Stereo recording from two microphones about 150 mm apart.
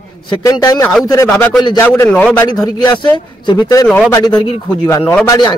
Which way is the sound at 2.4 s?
30° left (ahead or behind).